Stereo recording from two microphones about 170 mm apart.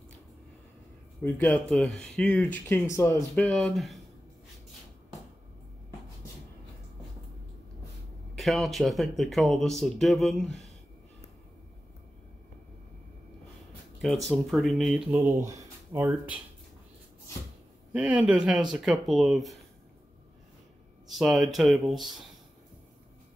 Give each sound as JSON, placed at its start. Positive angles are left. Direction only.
{"t": 1.5, "sound": "speech", "side_deg": 5}
{"t": 8.4, "sound": "speech", "side_deg": 0}
{"t": 14.0, "sound": "speech", "side_deg": 0}
{"t": 15.1, "sound": "speech", "side_deg": -20}
{"t": 17.9, "sound": "speech", "side_deg": -10}
{"t": 21.2, "sound": "speech", "side_deg": 0}